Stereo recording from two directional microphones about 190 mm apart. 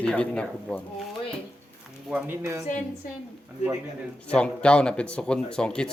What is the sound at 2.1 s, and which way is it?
Speech, 15° right (ahead or behind).